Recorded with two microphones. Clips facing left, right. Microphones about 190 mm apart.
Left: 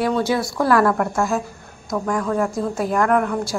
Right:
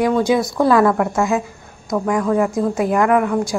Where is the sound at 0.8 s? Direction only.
5° right (ahead or behind).